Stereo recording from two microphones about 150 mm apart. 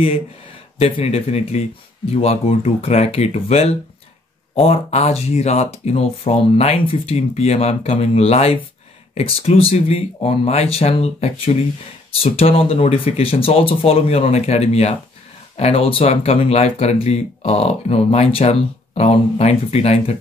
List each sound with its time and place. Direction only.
0.7 s speech: 40° left (ahead or behind)